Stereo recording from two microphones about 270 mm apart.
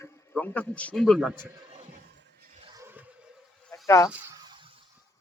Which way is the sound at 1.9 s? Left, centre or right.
Right.